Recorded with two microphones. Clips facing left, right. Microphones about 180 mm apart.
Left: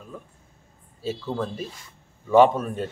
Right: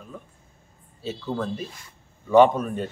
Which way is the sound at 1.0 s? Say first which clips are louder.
Even; 10° left (ahead or behind).